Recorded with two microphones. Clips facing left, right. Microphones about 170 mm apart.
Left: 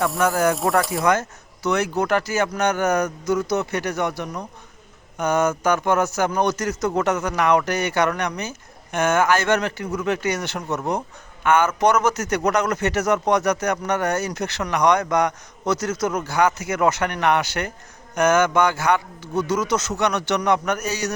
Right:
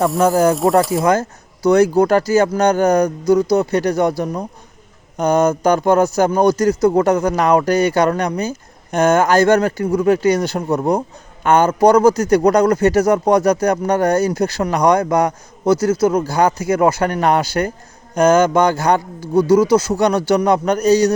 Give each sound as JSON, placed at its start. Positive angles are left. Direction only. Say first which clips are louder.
{"t": 0.2, "sound": "speech", "louder": "right 6 dB", "side_deg": -30}